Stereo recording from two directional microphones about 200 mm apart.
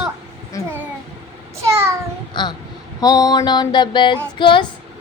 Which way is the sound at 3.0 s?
20° left (ahead or behind).